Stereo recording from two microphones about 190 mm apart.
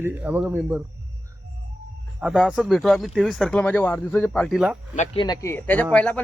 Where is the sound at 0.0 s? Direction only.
10° right (ahead or behind).